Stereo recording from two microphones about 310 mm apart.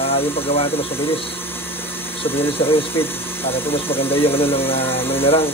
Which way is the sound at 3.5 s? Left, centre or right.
Centre.